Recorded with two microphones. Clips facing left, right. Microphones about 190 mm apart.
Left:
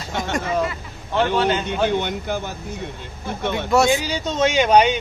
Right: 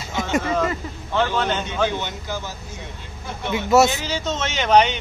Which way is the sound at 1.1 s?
15° left (ahead or behind).